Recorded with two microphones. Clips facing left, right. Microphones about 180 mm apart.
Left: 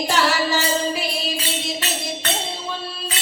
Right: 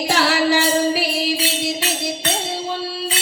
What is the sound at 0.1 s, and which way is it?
Music, 65° right (ahead or behind).